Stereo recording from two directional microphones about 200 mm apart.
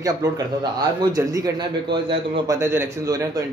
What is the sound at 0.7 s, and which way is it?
A man's voice, 15° right (ahead or behind).